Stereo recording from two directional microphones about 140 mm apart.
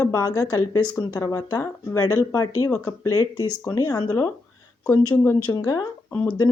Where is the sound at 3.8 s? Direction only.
25° left (ahead or behind).